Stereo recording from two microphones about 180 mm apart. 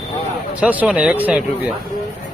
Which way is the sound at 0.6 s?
10° right (ahead or behind).